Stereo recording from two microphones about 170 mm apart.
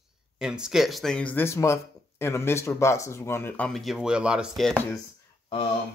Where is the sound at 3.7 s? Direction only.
Centre (ahead or behind).